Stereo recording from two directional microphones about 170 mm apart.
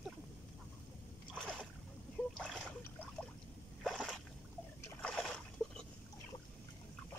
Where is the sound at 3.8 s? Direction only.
Centre (ahead or behind).